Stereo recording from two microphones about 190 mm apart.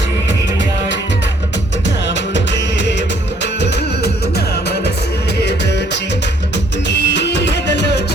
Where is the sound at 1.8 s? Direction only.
70° left (ahead or behind).